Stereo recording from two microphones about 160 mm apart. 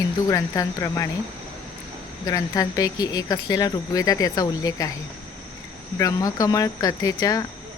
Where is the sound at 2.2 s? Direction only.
20° left (ahead or behind).